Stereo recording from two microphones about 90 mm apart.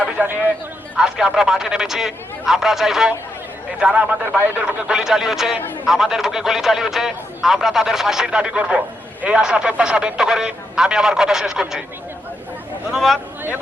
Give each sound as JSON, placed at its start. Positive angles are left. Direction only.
{"t": 0.0, "sound": "a sound", "side_deg": -15}
{"t": 0.9, "sound": "speech", "side_deg": -10}
{"t": 4.9, "sound": "speech", "side_deg": -5}
{"t": 12.9, "sound": "speech", "side_deg": 0}